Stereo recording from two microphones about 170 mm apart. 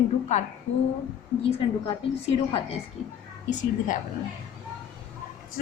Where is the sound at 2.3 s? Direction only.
35° left (ahead or behind).